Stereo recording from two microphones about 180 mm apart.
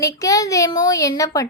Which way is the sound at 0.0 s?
20° left (ahead or behind).